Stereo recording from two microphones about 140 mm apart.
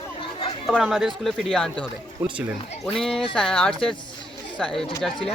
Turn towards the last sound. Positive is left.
turn(degrees=0)  # may be behind; listen again after turning